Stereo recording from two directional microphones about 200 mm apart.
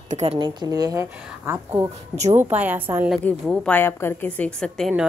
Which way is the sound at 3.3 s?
5° left (ahead or behind).